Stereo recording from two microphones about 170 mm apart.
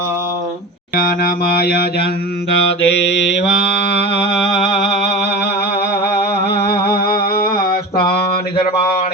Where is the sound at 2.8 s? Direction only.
90° left.